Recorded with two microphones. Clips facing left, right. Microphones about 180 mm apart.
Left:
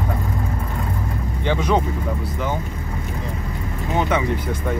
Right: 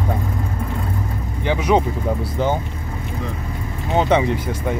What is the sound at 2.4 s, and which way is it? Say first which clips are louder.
Speech: right 6 dB; 30° right (ahead or behind).